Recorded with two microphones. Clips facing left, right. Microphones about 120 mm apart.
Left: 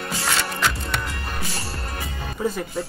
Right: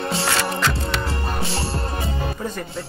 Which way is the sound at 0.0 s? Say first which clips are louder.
Right 4 dB; 25° right (ahead or behind).